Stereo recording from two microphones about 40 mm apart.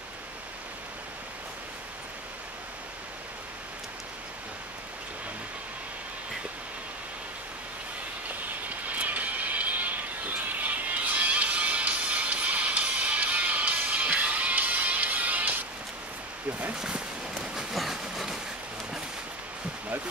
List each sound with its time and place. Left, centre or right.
8.4 s music: right
16.7 s speech: centre
17.7 s train: centre